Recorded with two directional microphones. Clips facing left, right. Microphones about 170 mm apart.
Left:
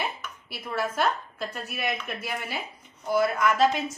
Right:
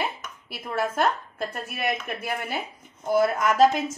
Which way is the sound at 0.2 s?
50° right (ahead or behind).